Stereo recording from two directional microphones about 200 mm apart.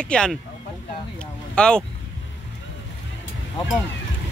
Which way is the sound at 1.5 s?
5° left (ahead or behind).